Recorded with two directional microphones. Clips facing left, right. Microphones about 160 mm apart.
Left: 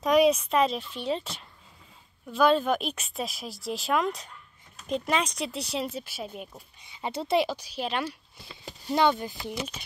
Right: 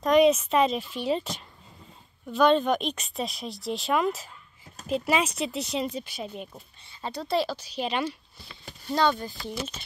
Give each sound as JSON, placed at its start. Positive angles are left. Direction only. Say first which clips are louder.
{"t": 0.0, "sound": "speech", "louder": "right 2 dB", "side_deg": 0}
{"t": 6.9, "sound": "speech", "louder": "left 2 dB", "side_deg": 20}
{"t": 7.7, "sound": "speech", "louder": "right 2 dB", "side_deg": 5}
{"t": 8.5, "sound": "speech", "louder": "left 1 dB", "side_deg": 20}